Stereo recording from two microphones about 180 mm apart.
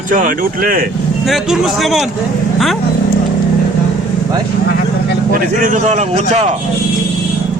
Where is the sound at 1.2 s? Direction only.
Centre (ahead or behind).